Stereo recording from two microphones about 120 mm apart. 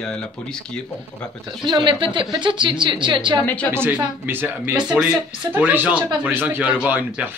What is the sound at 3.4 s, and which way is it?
Speech, 10° left (ahead or behind).